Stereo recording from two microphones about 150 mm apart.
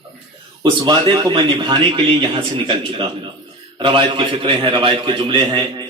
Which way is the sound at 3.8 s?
35° right (ahead or behind).